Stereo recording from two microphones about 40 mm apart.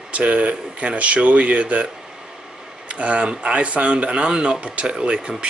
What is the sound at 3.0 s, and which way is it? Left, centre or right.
Speech, right.